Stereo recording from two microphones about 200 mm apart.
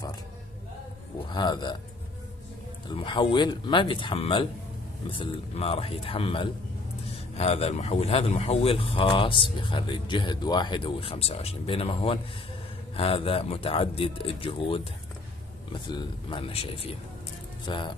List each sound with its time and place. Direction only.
1.3 s speech: 20° left (ahead or behind)
2.9 s speech: 25° left (ahead or behind)
15.9 s speech: 20° left (ahead or behind)